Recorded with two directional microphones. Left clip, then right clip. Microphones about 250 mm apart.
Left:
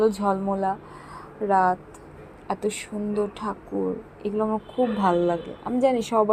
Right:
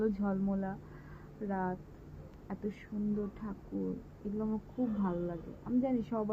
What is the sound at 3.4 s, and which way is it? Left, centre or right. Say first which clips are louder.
Speech: left 16 dB; centre.